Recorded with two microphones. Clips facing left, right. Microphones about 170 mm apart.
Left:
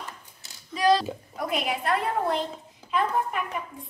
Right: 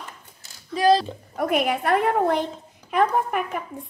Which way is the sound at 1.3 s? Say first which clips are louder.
Right 7 dB; 55° right (ahead or behind).